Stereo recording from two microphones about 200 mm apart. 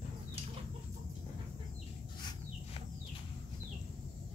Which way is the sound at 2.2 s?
20° left (ahead or behind).